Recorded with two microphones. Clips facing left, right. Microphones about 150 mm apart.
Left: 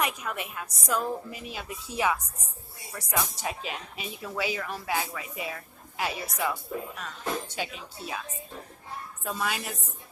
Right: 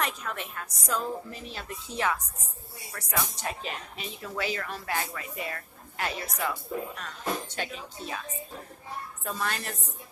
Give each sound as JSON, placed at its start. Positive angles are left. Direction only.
{"t": 0.0, "sound": "speech", "side_deg": 10}
{"t": 7.5, "sound": "speech", "side_deg": 10}
{"t": 9.2, "sound": "speech", "side_deg": 5}